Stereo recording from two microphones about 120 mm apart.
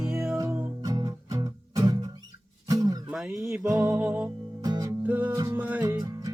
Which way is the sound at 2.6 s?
30° right (ahead or behind).